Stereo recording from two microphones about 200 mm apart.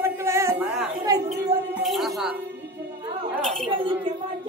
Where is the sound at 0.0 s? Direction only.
15° right (ahead or behind).